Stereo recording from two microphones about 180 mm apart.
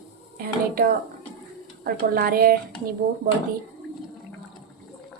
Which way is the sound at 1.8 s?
55° right (ahead or behind).